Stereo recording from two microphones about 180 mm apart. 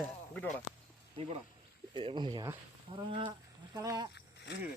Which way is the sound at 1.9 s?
30° right (ahead or behind).